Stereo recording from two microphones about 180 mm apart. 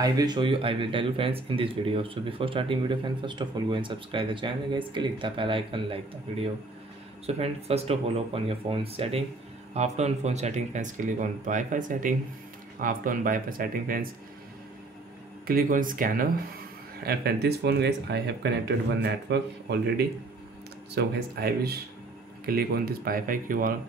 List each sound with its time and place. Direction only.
0.0 s speech: 20° right (ahead or behind); by 14.0 s 55° right (ahead or behind)
15.4 s speech: 50° right (ahead or behind)
17.0 s speech: 60° right (ahead or behind)